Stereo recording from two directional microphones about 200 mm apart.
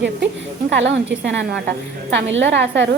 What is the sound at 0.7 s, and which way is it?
A woman's voice, 65° right (ahead or behind).